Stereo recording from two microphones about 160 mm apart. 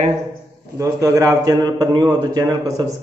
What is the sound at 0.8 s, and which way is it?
A man's voice, 20° right (ahead or behind).